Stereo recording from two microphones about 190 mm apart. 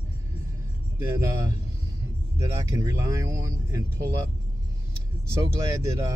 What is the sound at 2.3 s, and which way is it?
Speech, 15° right (ahead or behind).